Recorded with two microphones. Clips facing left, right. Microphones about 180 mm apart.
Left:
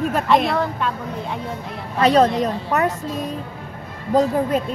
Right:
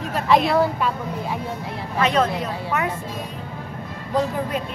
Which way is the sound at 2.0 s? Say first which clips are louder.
Left 5 dB; 35° left (ahead or behind).